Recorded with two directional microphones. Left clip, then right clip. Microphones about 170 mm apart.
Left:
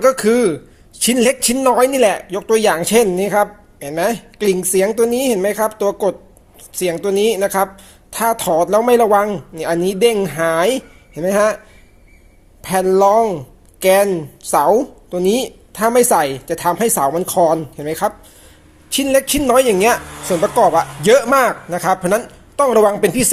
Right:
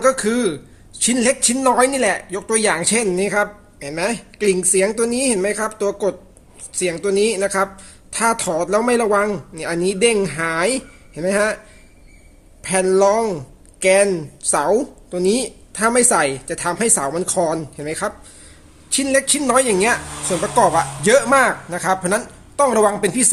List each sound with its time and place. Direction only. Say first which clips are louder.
0.0 s a woman's voice: left 4 dB; 35° left (ahead or behind)
12.6 s a woman's voice: left 2 dB; 20° left (ahead or behind)